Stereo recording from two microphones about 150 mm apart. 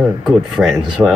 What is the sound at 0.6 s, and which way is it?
Speech, 5° right (ahead or behind).